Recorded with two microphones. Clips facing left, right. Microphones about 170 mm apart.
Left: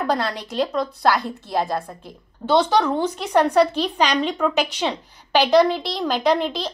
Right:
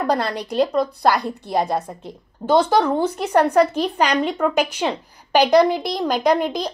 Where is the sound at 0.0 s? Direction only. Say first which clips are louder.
Right 2 dB; 15° right (ahead or behind).